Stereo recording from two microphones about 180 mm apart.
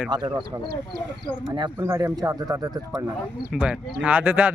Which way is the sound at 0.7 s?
60° right (ahead or behind).